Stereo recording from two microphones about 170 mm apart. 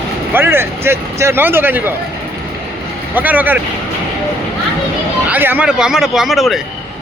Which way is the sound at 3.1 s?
10° right (ahead or behind).